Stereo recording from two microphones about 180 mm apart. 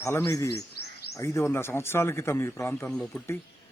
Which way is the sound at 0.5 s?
65° left (ahead or behind).